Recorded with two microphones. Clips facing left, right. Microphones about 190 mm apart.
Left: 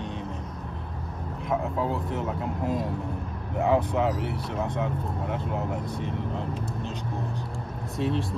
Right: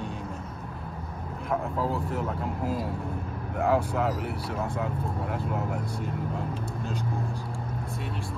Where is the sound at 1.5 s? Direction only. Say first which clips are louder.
Left 1 dB; centre (ahead or behind).